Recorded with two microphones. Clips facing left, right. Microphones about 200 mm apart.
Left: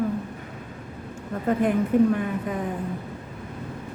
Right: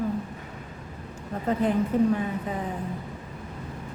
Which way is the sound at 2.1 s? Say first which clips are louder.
Left 2 dB; 55° left (ahead or behind).